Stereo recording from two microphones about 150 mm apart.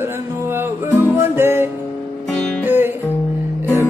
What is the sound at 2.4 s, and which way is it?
Music, 5° left (ahead or behind).